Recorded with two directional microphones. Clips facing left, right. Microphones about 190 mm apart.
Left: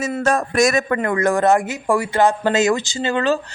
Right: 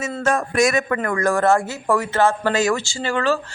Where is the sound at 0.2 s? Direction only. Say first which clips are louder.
Left 1 dB; 40° left (ahead or behind).